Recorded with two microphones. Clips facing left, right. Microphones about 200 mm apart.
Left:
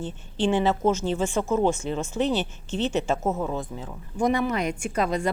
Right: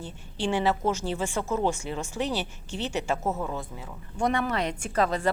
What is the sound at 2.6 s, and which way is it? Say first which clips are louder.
A woman's voice: left 5 dB; 20° left (ahead or behind).